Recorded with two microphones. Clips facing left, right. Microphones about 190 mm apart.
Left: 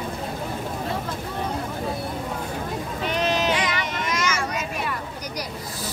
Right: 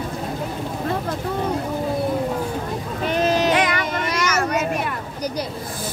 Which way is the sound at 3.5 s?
55° right (ahead or behind).